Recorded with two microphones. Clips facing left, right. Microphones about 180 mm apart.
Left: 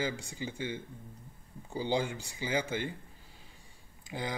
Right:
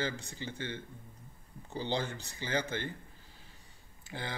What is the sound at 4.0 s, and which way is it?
Speech, 15° left (ahead or behind).